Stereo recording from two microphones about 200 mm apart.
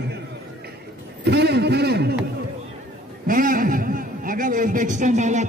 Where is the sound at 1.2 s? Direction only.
55° right (ahead or behind).